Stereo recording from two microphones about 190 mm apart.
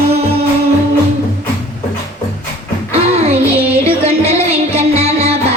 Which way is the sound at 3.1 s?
35° right (ahead or behind).